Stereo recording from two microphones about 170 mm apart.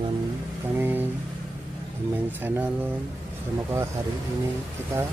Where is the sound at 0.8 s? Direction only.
10° right (ahead or behind).